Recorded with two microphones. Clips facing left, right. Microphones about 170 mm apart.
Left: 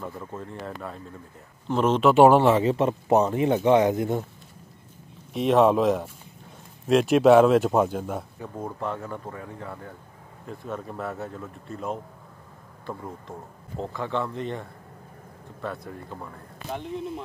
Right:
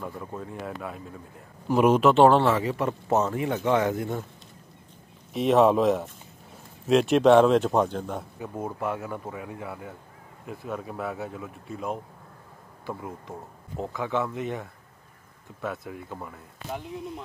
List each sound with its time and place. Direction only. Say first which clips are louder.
0.0 s speech: even; centre (ahead or behind)
2.1 s speech: left 2 dB; 10° left (ahead or behind)
5.3 s speech: even; centre (ahead or behind)
8.4 s speech: right 1 dB; 10° right (ahead or behind)